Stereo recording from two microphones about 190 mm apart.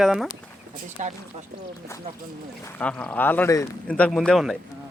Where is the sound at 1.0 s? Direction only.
40° right (ahead or behind).